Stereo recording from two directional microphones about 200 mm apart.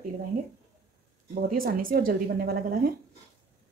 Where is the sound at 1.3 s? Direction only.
45° right (ahead or behind).